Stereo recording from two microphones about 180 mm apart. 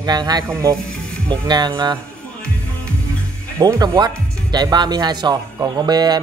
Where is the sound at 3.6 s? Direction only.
20° right (ahead or behind).